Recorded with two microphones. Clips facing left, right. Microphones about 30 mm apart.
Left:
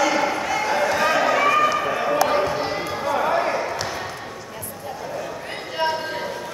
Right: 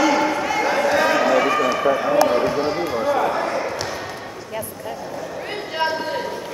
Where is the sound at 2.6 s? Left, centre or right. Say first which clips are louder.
Right 4 dB; centre.